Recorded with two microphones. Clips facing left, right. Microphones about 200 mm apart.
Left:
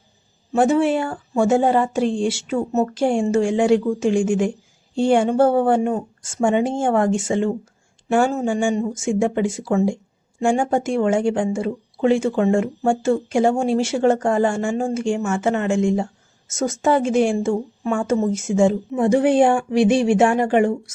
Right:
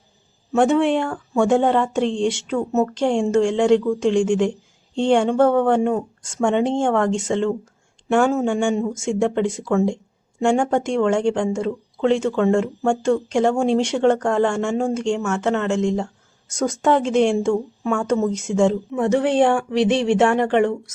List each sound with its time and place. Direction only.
0.5 s speech: 5° left (ahead or behind)